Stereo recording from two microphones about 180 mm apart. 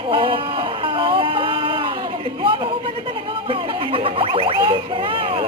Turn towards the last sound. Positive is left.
turn(degrees=-30)  # may be behind; listen again after turning